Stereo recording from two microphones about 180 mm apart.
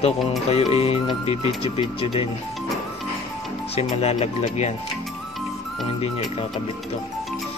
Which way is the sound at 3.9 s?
35° left (ahead or behind).